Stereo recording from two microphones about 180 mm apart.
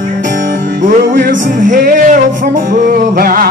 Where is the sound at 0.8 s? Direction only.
45° right (ahead or behind).